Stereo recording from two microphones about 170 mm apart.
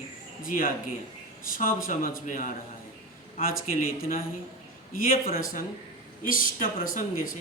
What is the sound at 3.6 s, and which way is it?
A man's voice, 55° left (ahead or behind).